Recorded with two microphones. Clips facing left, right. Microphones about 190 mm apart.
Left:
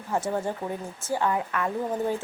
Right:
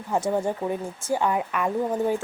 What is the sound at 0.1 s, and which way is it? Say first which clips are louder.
Speech: right 3 dB; 15° right (ahead or behind).